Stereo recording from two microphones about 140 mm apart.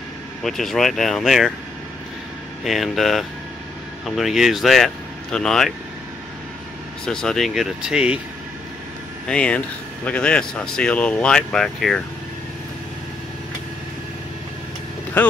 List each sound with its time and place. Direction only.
0.4 s speech: centre (ahead or behind)
2.6 s speech: centre (ahead or behind)
7.1 s speech: 5° left (ahead or behind)
9.3 s speech: 10° left (ahead or behind)